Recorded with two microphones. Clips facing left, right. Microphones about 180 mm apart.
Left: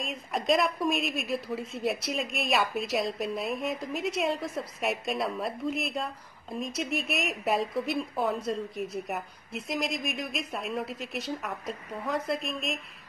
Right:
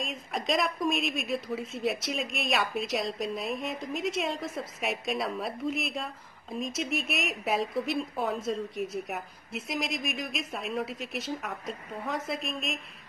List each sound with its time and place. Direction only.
0.0 s speech: centre (ahead or behind)